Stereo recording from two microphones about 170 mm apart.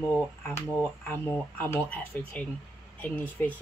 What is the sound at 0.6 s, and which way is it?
Speech, 15° left (ahead or behind).